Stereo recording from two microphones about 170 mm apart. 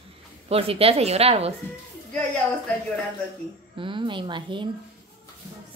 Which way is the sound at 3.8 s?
30° right (ahead or behind).